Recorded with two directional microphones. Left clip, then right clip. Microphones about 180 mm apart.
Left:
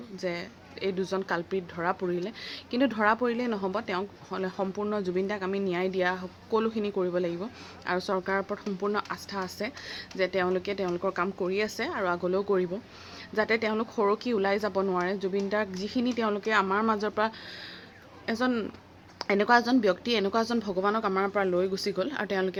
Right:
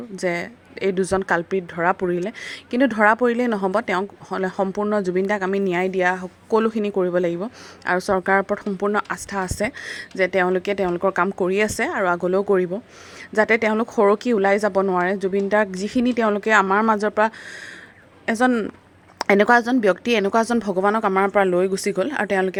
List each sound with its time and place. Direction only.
0.2 s speech: 55° right (ahead or behind)
11.9 s a woman's voice: 40° right (ahead or behind)